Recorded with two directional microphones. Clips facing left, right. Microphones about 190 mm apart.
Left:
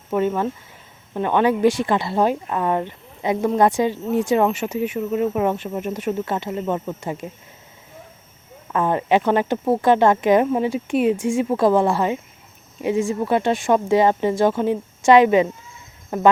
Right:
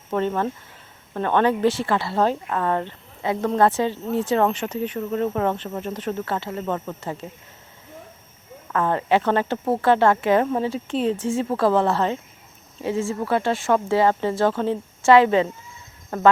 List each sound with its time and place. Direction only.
0.1 s speech: 10° left (ahead or behind)
8.7 s speech: 15° left (ahead or behind)